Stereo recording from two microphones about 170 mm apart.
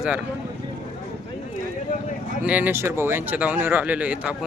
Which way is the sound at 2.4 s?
10° right (ahead or behind).